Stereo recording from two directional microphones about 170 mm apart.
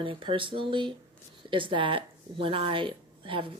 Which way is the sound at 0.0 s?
30° right (ahead or behind).